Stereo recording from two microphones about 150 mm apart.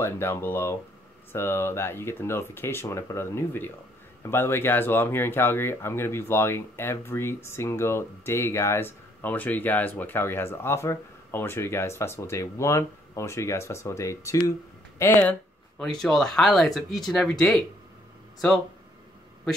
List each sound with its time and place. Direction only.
0.0 s speech: 15° left (ahead or behind)
15.8 s speech: 5° left (ahead or behind)